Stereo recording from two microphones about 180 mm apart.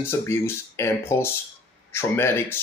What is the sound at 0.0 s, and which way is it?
Speech, 15° left (ahead or behind).